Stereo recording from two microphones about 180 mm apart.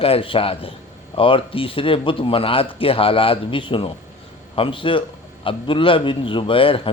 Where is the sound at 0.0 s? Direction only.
30° left (ahead or behind).